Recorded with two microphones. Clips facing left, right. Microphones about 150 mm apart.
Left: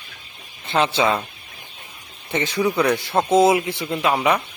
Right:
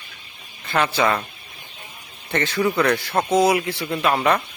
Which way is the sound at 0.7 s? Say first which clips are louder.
Left 1 dB; 20° left (ahead or behind).